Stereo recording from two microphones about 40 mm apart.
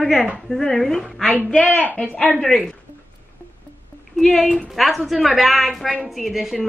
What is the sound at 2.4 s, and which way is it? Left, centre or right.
Speech, centre.